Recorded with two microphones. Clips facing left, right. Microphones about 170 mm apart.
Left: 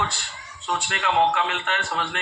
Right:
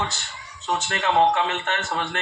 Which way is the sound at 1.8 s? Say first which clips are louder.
Right 1 dB; 20° right (ahead or behind).